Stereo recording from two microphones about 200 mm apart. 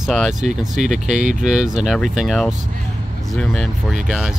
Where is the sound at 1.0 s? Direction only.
40° right (ahead or behind).